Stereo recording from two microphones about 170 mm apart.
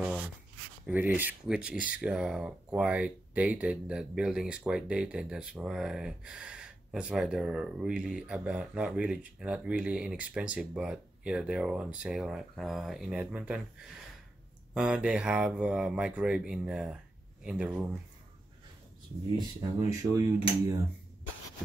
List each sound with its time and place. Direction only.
0.0 s writing: 5° right (ahead or behind)
0.8 s speech: 10° right (ahead or behind)
14.7 s speech: 5° right (ahead or behind)
20.0 s dishes: 20° right (ahead or behind)